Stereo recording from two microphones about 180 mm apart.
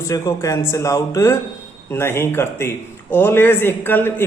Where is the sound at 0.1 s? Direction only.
15° left (ahead or behind).